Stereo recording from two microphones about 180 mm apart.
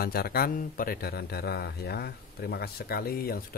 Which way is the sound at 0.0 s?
55° left (ahead or behind).